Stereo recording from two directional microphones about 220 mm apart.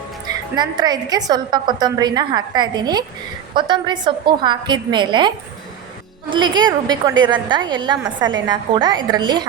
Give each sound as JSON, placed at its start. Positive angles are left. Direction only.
{"t": 0.5, "sound": "a woman's voice", "side_deg": -20}
{"t": 6.3, "sound": "a woman's voice", "side_deg": -20}